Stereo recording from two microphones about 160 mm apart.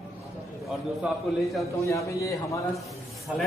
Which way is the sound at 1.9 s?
20° left (ahead or behind).